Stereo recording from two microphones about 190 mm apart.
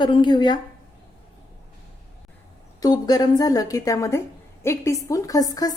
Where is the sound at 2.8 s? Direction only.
20° left (ahead or behind).